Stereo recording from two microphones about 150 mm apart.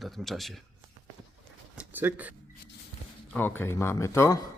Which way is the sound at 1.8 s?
10° right (ahead or behind).